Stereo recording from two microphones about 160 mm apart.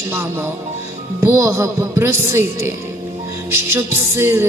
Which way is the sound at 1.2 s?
15° right (ahead or behind).